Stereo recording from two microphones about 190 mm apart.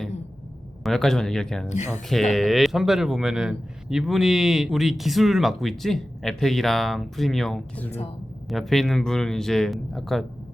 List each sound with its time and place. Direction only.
0.9 s speech: centre (ahead or behind)
7.9 s speech: 35° left (ahead or behind)
8.4 s speech: centre (ahead or behind)